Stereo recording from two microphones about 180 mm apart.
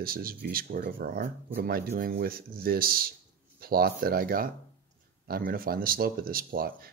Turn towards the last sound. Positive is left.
turn(degrees=-55)  # may be behind; listen again after turning